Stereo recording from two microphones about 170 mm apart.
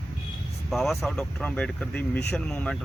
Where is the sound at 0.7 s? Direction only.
Centre (ahead or behind).